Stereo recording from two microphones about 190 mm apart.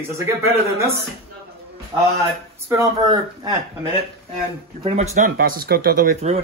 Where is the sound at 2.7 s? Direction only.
20° right (ahead or behind).